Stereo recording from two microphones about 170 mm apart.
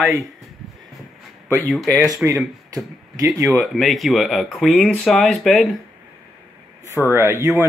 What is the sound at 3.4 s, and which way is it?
Speech, centre (ahead or behind).